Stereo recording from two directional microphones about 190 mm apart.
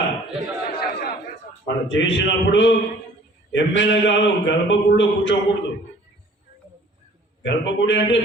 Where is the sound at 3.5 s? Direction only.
75° left (ahead or behind).